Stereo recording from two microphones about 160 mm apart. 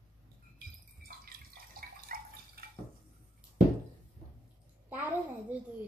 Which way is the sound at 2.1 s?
65° right (ahead or behind).